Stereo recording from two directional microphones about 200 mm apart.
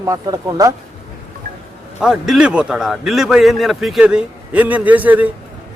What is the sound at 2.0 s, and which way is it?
A man's voice, centre (ahead or behind).